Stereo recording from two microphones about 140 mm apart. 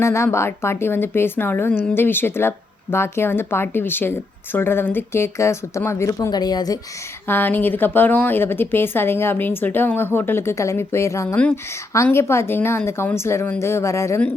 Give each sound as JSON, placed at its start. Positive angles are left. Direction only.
{"t": 0.0, "sound": "a woman's voice", "side_deg": 20}
{"t": 7.3, "sound": "a woman's voice", "side_deg": 15}